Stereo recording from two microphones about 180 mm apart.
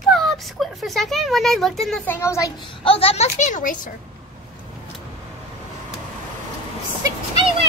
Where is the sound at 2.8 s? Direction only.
35° left (ahead or behind).